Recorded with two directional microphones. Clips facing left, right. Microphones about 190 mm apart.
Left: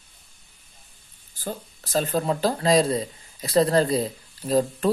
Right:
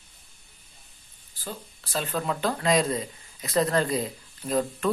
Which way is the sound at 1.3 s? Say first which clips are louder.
Left 5 dB; 45° left (ahead or behind).